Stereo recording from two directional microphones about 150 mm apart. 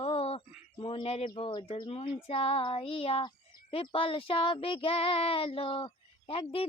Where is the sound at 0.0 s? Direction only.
40° left (ahead or behind).